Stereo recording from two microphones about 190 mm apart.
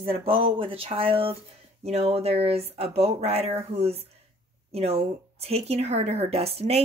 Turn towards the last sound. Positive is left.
turn(degrees=-35)  # may be behind; listen again after turning